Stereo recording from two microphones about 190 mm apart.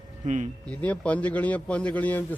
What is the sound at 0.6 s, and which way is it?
A man's voice, 5° left (ahead or behind).